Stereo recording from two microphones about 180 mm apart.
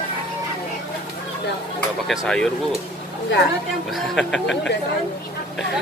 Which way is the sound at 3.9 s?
Centre (ahead or behind).